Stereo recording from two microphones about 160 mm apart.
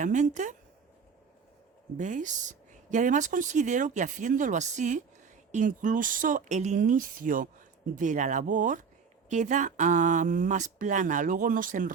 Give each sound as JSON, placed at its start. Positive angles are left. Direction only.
{"t": 0.0, "sound": "speech", "side_deg": -50}
{"t": 2.0, "sound": "speech", "side_deg": -50}